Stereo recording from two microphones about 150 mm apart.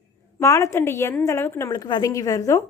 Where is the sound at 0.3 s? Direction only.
20° left (ahead or behind).